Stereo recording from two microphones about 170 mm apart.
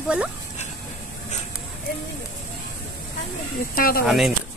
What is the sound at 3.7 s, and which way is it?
Speech, 60° left (ahead or behind).